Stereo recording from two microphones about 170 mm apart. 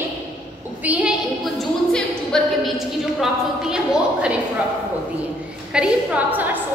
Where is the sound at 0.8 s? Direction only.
Centre (ahead or behind).